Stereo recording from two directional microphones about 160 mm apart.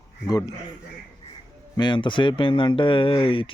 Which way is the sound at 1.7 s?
30° left (ahead or behind).